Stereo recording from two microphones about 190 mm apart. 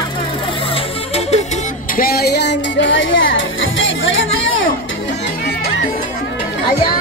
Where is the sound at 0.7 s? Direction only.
35° left (ahead or behind).